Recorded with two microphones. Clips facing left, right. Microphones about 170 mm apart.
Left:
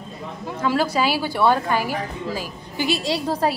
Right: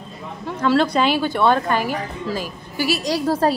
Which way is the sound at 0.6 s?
10° left (ahead or behind).